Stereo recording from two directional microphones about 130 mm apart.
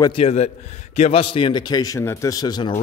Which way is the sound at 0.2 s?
55° left (ahead or behind).